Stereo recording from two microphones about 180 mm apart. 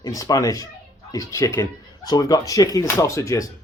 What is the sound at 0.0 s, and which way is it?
Speech, 20° left (ahead or behind).